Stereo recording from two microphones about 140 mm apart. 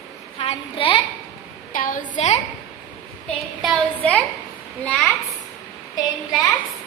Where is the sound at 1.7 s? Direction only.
70° left (ahead or behind).